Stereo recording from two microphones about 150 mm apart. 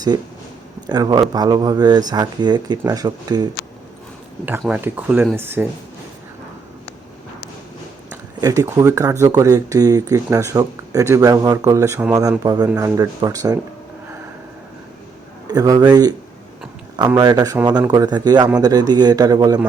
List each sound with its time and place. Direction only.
0.9 s speech: 25° right (ahead or behind)
4.7 s speech: 10° right (ahead or behind)
8.4 s speech: 20° right (ahead or behind)
12.4 s speech: 25° right (ahead or behind)
15.4 s speech: 25° right (ahead or behind)
17.2 s speech: 25° right (ahead or behind)